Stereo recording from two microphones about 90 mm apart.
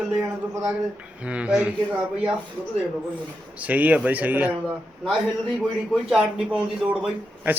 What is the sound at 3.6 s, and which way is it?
Speech, 15° right (ahead or behind).